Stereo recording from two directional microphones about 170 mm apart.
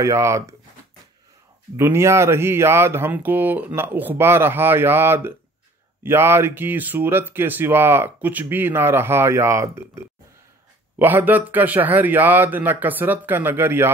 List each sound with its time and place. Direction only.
0.0 s speech: 15° right (ahead or behind)
1.8 s speech: 15° right (ahead or behind)
11.0 s speech: 10° right (ahead or behind)